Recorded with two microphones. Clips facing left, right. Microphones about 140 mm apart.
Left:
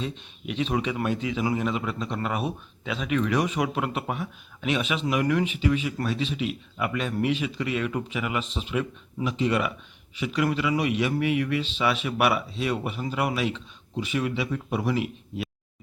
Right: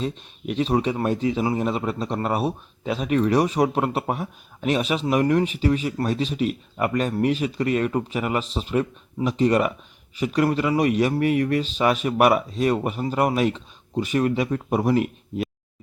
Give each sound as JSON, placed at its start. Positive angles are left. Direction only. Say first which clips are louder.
{"t": 0.0, "sound": "a man's voice", "louder": "right 5 dB", "side_deg": -40}